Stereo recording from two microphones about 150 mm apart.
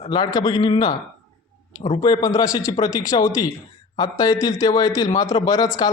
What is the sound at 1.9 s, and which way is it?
A man's voice, 30° left (ahead or behind).